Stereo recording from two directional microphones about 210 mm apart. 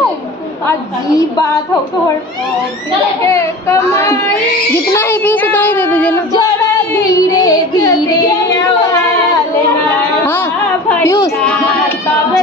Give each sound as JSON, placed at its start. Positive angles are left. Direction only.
{"t": 0.7, "sound": "speech", "side_deg": 15}
{"t": 3.3, "sound": "speech", "side_deg": 15}
{"t": 6.9, "sound": "child singing", "side_deg": 15}
{"t": 9.8, "sound": "a sound", "side_deg": 10}
{"t": 11.0, "sound": "child singing", "side_deg": 15}